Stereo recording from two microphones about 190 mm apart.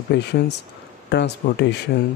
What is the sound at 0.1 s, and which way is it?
Speech, 60° left (ahead or behind).